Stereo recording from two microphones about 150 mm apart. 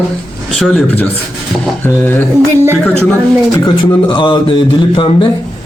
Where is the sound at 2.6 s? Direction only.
15° right (ahead or behind).